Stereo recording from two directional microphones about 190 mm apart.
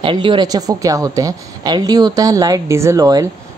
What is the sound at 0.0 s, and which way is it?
Speech, 25° right (ahead or behind).